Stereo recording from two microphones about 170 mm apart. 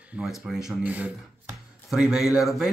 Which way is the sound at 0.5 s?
5° right (ahead or behind).